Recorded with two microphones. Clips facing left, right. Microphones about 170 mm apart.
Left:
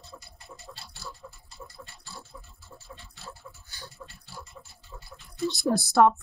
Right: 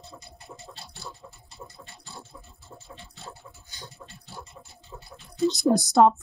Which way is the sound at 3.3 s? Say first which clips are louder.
Left 2 dB; 20° right (ahead or behind).